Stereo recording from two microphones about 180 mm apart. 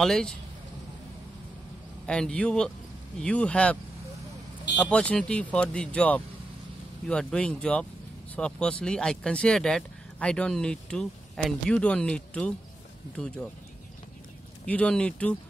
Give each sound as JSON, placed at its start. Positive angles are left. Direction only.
{"t": 0.0, "sound": "speech", "side_deg": 0}
{"t": 2.0, "sound": "speech", "side_deg": 5}
{"t": 4.7, "sound": "speech", "side_deg": 5}
{"t": 14.7, "sound": "speech", "side_deg": 5}